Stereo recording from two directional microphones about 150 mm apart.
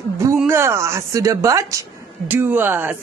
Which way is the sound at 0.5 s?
20° right (ahead or behind).